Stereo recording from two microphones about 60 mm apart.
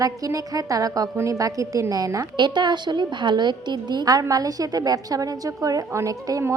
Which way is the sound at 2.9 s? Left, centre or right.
Right.